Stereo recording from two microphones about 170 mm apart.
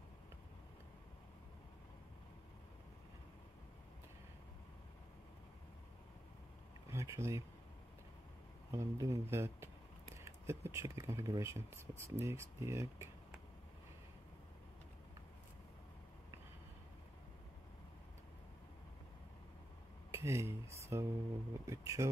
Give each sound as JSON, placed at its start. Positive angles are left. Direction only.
{"t": 6.9, "sound": "a sound", "side_deg": -15}
{"t": 8.7, "sound": "speech", "side_deg": -20}
{"t": 20.1, "sound": "speech", "side_deg": -15}